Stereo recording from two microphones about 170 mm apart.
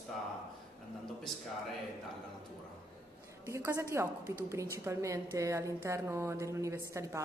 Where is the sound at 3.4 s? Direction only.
15° right (ahead or behind).